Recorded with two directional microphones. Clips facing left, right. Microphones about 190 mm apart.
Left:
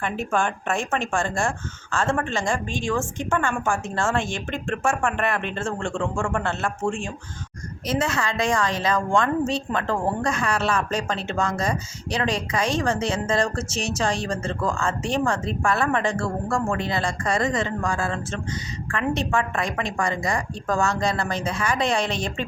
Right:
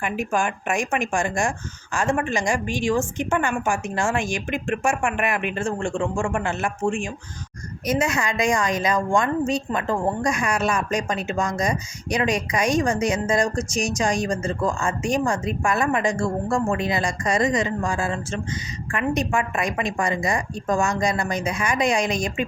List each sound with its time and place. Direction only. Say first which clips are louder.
0.0 s a woman's voice: right 1 dB; 10° right (ahead or behind)